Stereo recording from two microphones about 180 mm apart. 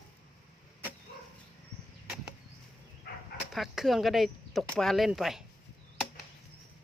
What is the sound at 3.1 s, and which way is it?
Dog, 60° left (ahead or behind).